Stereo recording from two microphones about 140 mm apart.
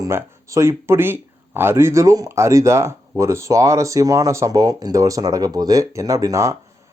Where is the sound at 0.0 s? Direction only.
20° right (ahead or behind).